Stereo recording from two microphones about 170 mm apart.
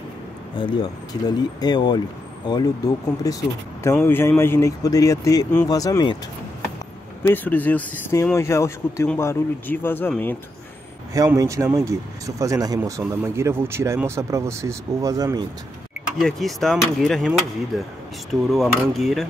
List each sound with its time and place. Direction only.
0.6 s speech: 30° left (ahead or behind)
7.2 s speech: 10° left (ahead or behind)
11.1 s speech: 20° right (ahead or behind)
16.2 s speech: centre (ahead or behind)